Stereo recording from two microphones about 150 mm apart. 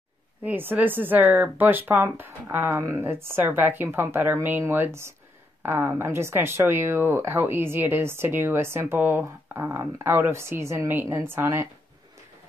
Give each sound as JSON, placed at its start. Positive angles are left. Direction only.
{"t": 0.4, "sound": "speech", "side_deg": -10}